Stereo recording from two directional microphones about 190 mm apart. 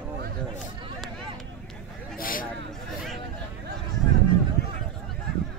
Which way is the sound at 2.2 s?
45° left (ahead or behind).